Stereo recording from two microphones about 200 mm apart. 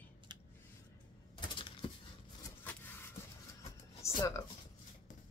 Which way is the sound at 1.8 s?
25° left (ahead or behind).